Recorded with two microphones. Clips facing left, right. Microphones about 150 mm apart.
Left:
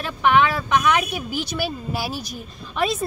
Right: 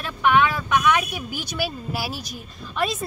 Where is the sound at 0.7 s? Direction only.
30° left (ahead or behind).